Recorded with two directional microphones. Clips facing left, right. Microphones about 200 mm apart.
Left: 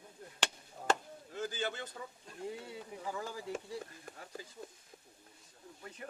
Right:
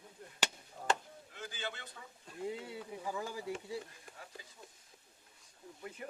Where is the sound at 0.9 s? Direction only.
40° left (ahead or behind).